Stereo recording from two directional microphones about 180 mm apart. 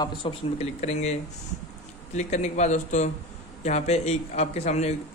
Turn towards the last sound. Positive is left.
turn(degrees=40)  # may be behind; listen again after turning